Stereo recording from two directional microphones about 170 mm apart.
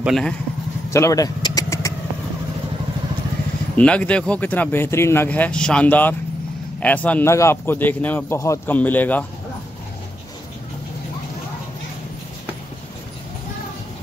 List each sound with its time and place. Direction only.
0.0 s speech: centre (ahead or behind)
0.8 s vehicle: 15° left (ahead or behind)
3.7 s speech: 5° left (ahead or behind)